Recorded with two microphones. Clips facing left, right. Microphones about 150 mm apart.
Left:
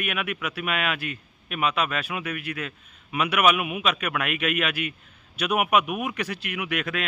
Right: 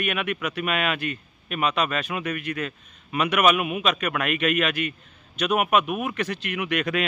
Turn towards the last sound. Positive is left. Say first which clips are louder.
# right 3 dB
turn(degrees=5)  # may be behind; listen again after turning